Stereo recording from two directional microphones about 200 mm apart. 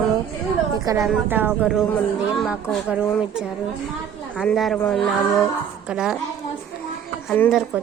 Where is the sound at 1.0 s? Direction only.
5° right (ahead or behind).